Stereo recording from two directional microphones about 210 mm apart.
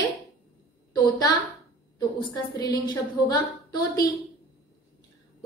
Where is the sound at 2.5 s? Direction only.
15° left (ahead or behind).